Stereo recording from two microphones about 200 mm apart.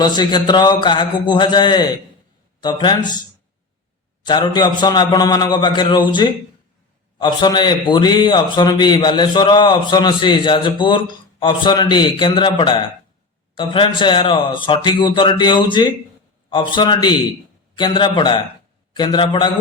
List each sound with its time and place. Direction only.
0.0 s a man's voice: 20° left (ahead or behind)